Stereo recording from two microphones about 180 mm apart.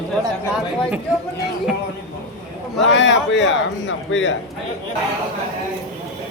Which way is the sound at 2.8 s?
80° left.